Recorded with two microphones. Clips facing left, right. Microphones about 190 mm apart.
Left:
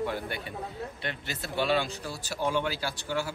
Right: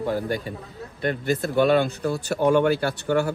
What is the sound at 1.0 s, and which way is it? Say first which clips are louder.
Speech: right 18 dB; 50° right (ahead or behind).